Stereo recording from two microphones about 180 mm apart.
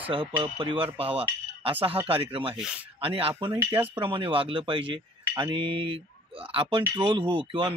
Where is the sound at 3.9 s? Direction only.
30° right (ahead or behind).